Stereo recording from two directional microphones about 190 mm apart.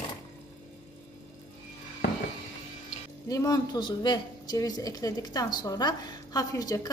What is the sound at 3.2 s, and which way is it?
A woman's voice, 20° left (ahead or behind).